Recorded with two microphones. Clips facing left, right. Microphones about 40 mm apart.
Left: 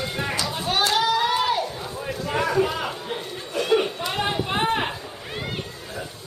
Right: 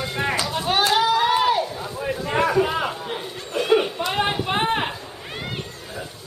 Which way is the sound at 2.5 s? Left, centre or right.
Centre.